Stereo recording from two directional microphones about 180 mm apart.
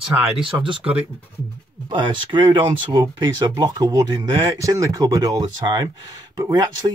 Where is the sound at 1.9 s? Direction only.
25° right (ahead or behind).